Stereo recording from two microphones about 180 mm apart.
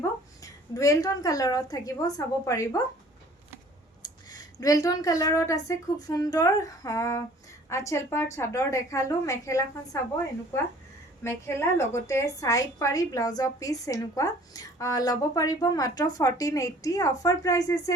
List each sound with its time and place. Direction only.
0.4 s a woman's voice: 20° left (ahead or behind)
4.0 s a woman's voice: 20° left (ahead or behind)
11.2 s a woman's voice: 15° left (ahead or behind)